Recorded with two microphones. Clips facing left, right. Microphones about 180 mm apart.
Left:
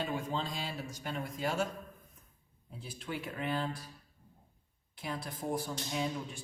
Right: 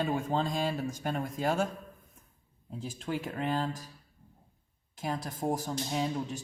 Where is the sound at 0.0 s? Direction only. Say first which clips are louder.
Right 6 dB; 50° right (ahead or behind).